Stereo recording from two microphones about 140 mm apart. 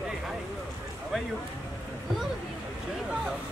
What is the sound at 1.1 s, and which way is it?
Speech, centre (ahead or behind).